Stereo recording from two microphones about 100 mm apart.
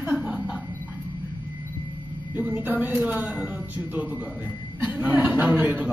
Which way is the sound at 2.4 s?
20° right (ahead or behind).